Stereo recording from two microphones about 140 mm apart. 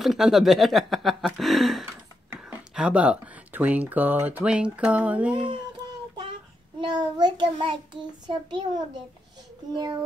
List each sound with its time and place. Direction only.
0.0 s speech: centre (ahead or behind)
5.3 s child singing: 40° right (ahead or behind)
6.8 s child singing: 30° right (ahead or behind)